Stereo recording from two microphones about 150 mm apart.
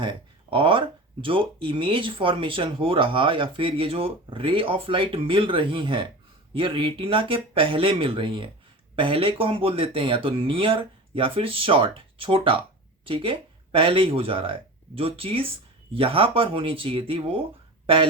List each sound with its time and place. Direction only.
0.0 s speech: 35° right (ahead or behind)